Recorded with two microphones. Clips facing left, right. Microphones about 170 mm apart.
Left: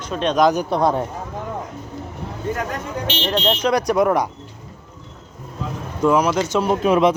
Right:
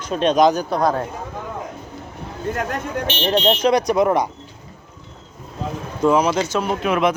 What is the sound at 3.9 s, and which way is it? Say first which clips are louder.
Speech: even; 15° right (ahead or behind).